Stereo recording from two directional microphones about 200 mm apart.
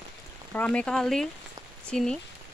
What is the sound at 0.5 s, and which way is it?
Speech, 5° left (ahead or behind).